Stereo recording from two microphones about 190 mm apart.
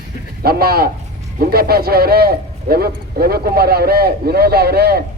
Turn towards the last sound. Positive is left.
turn(degrees=-55)  # may be behind; listen again after turning